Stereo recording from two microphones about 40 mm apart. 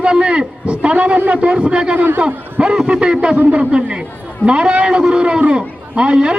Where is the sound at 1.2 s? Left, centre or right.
Right.